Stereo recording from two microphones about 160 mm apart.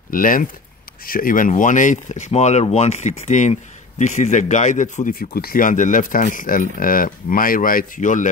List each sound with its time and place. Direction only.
0.1 s speech: 60° left (ahead or behind)